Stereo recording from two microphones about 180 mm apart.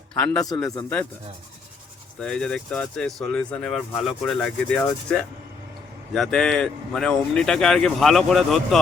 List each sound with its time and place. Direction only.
0.3 s a man's voice: 20° left (ahead or behind)
2.2 s speech: 5° left (ahead or behind)